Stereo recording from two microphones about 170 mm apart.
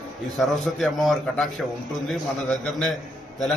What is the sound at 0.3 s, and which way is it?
A man's voice, centre (ahead or behind).